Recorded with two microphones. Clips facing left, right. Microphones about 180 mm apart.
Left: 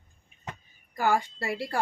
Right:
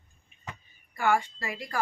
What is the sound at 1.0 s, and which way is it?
Speech, 35° left (ahead or behind).